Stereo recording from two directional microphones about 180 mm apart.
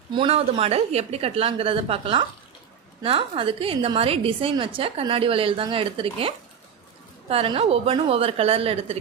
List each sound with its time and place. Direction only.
0.1 s a woman's voice: 30° right (ahead or behind)